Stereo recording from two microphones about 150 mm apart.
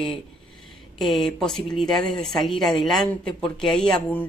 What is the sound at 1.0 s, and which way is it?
Speech, centre (ahead or behind).